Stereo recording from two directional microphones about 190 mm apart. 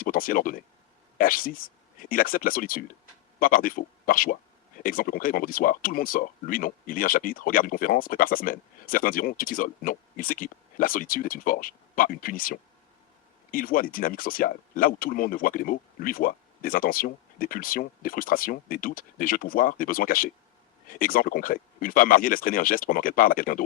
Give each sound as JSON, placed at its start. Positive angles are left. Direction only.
{"t": 0.0, "sound": "speech", "side_deg": 50}